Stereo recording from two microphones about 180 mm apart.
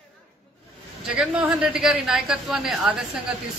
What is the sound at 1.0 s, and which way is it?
A man's voice, 5° right (ahead or behind).